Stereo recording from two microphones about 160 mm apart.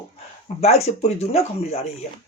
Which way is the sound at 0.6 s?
40° left (ahead or behind).